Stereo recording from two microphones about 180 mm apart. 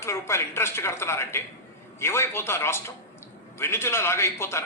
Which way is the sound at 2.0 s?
15° left (ahead or behind).